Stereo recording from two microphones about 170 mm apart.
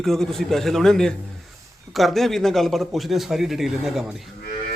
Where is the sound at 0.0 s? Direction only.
Centre (ahead or behind).